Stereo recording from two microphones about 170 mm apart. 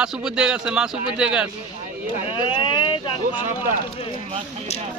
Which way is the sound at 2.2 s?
30° left (ahead or behind).